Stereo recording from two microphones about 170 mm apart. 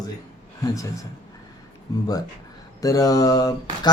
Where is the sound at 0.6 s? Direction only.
20° left (ahead or behind).